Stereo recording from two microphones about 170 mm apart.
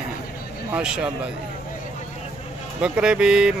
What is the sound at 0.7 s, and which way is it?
Speech, 5° right (ahead or behind).